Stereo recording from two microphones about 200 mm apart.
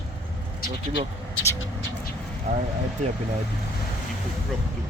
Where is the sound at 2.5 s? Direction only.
35° right (ahead or behind).